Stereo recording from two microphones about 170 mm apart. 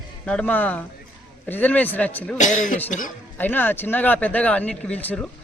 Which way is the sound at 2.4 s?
45° left (ahead or behind).